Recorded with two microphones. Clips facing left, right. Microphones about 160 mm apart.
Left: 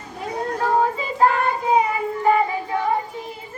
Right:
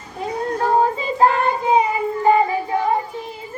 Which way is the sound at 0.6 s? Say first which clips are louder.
Right 2 dB; 30° right (ahead or behind).